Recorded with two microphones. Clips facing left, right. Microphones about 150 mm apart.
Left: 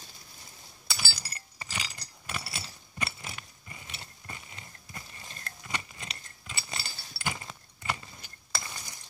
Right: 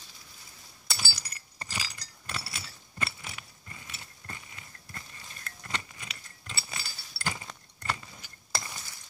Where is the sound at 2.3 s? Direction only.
20° left (ahead or behind).